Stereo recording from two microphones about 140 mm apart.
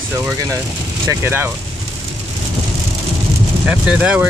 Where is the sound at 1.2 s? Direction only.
15° right (ahead or behind).